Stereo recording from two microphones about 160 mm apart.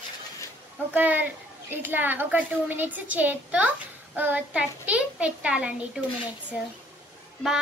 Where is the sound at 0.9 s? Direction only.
10° right (ahead or behind).